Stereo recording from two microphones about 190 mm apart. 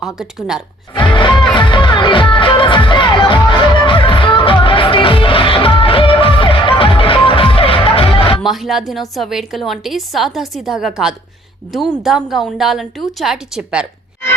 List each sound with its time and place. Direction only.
0.0 s a woman's voice: centre (ahead or behind)
0.9 s music: 25° left (ahead or behind)
8.4 s a woman's voice: centre (ahead or behind)